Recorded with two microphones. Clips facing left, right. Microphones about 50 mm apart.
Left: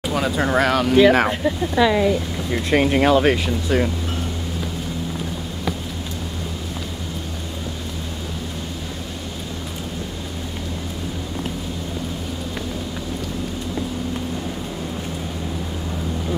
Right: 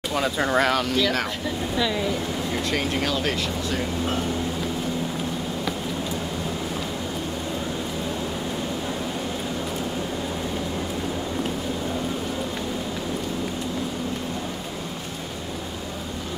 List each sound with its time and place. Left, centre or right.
0.1 s speech: centre
0.9 s speech: left